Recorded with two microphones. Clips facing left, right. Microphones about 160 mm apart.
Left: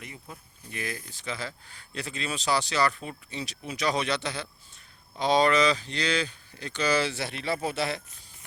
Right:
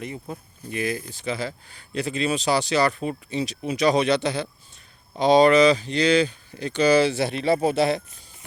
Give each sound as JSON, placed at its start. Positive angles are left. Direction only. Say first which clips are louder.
{"t": 0.0, "sound": "speech", "louder": "right 11 dB", "side_deg": -30}
{"t": 0.7, "sound": "speech", "louder": "right 9 dB", "side_deg": -15}